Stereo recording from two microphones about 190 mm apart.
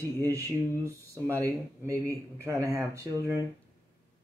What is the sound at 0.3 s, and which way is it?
Speech, 15° right (ahead or behind).